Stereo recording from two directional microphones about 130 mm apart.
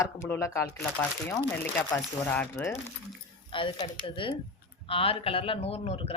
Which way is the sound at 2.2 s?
10° left (ahead or behind).